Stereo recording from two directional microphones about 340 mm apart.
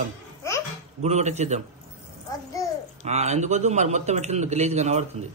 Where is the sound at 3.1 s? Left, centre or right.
Centre.